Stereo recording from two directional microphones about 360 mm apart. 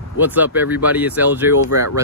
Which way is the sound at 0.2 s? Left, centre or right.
Centre.